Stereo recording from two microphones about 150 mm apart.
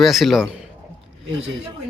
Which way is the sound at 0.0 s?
Centre (ahead or behind).